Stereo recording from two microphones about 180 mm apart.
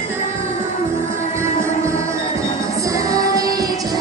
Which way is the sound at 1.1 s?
15° right (ahead or behind).